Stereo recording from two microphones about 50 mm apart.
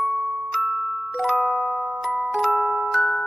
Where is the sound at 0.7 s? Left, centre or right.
Centre.